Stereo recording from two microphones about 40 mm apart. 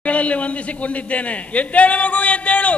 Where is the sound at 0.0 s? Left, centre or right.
Left.